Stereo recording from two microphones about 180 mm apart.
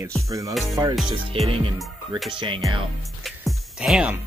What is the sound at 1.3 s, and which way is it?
Speech, 30° right (ahead or behind).